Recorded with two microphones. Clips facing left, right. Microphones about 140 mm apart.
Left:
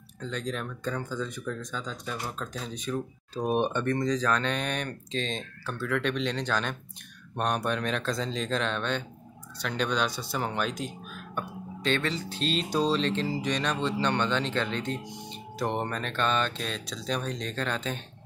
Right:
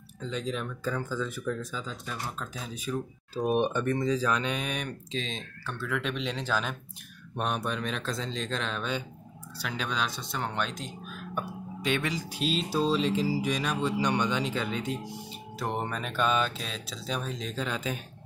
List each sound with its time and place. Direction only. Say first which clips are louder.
0.2 s speech: even; centre (ahead or behind)